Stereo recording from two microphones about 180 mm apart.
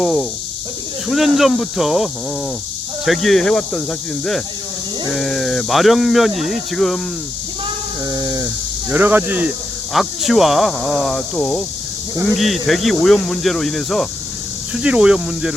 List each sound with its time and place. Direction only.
0.0 s speech: centre (ahead or behind)
3.1 s speech: centre (ahead or behind)
5.1 s speech: centre (ahead or behind)
8.0 s speech: 20° right (ahead or behind); by 15.5 s 5° right (ahead or behind)